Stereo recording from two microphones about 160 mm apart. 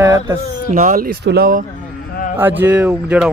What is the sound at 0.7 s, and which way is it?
Speech, 55° right (ahead or behind).